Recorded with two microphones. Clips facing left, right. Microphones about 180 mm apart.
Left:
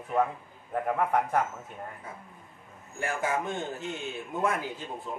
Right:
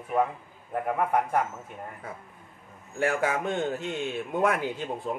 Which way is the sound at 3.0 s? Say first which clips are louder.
Right 4 dB; 65° right (ahead or behind).